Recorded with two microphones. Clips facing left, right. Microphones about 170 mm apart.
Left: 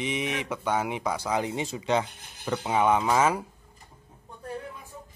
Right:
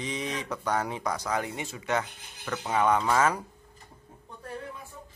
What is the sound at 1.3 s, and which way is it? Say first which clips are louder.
Speech: left 3 dB; 20° left (ahead or behind).